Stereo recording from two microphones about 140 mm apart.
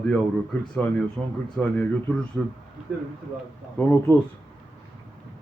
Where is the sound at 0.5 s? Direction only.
10° left (ahead or behind).